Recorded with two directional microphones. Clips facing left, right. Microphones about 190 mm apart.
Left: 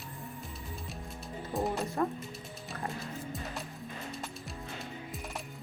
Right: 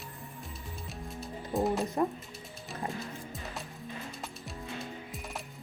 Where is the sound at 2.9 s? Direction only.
Centre (ahead or behind).